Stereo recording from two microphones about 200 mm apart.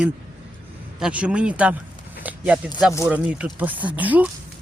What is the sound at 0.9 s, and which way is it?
Speech, 5° right (ahead or behind).